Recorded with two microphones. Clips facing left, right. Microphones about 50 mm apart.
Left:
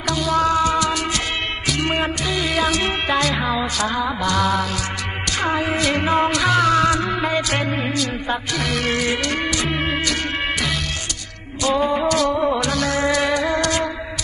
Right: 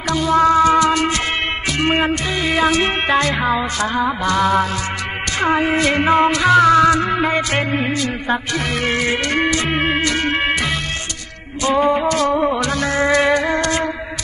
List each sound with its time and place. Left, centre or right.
0.1 s music: right
6.0 s music: right
6.7 s music: right
11.6 s music: right